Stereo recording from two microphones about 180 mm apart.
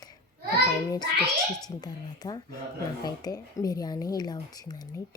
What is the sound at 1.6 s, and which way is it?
A woman's voice, 20° left (ahead or behind).